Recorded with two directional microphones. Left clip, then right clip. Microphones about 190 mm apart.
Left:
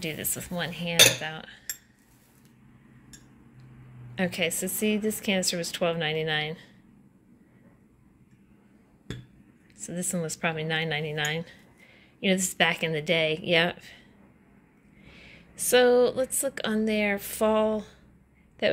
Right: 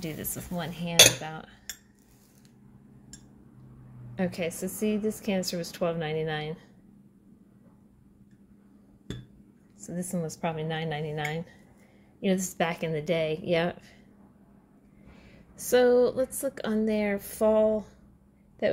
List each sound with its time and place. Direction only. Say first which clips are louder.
0.0 s a woman's voice: left 4 dB; 15° right (ahead or behind)
4.1 s a woman's voice: left 4 dB; 10° right (ahead or behind)
9.8 s a woman's voice: left 2 dB; 15° right (ahead or behind)
15.1 s a woman's voice: left 6 dB; 15° right (ahead or behind)